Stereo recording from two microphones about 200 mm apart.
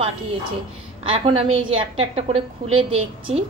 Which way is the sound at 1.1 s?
25° right (ahead or behind).